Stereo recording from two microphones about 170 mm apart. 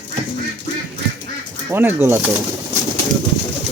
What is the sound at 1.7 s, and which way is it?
Speech, 10° right (ahead or behind).